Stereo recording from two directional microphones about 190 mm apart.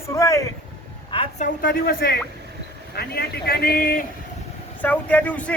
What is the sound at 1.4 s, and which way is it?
A man's voice, 45° left (ahead or behind).